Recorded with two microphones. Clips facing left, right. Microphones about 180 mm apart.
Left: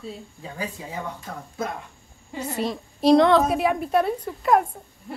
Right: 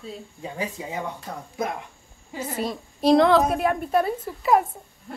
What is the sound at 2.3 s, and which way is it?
A woman's voice, centre (ahead or behind).